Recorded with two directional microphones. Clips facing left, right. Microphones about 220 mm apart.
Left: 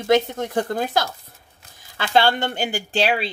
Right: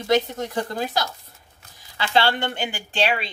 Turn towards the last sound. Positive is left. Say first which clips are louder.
# left 3 dB
turn(degrees=40)  # may be behind; listen again after turning